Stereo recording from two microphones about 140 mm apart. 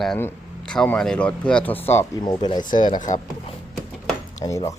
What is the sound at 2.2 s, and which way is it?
Speech, 30° left (ahead or behind).